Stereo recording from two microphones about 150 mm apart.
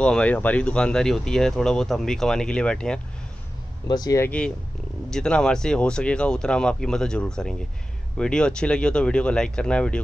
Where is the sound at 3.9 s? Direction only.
25° left (ahead or behind).